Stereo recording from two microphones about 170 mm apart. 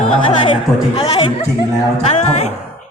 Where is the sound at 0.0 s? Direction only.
35° left (ahead or behind).